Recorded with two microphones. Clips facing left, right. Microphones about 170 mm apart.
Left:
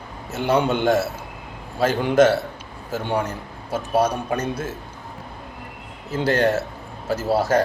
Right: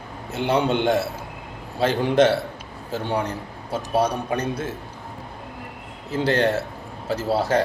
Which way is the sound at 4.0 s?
30° right (ahead or behind).